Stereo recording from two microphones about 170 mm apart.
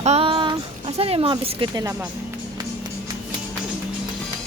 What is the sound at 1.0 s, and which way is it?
Speech, 35° right (ahead or behind).